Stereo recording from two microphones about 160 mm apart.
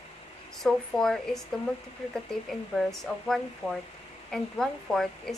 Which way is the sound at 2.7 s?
Centre (ahead or behind).